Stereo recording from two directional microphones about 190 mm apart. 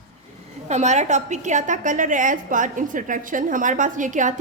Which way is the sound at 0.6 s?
35° right (ahead or behind).